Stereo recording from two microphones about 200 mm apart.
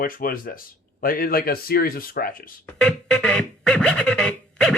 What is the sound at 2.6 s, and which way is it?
Music, 5° left (ahead or behind).